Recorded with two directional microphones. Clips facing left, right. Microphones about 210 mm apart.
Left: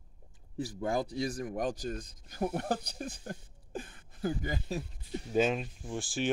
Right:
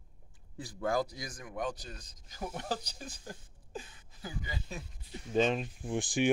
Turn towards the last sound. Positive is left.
turn(degrees=-15)  # may be behind; listen again after turning